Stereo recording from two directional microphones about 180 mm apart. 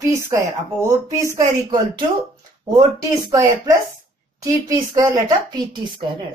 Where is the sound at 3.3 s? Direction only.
20° right (ahead or behind).